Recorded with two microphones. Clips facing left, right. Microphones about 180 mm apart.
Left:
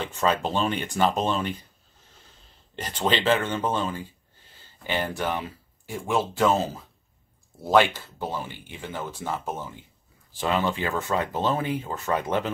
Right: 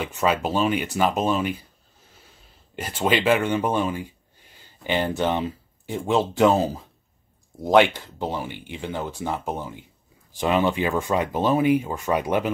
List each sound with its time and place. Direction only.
0.0 s speech: 10° right (ahead or behind)
2.7 s speech: 10° right (ahead or behind)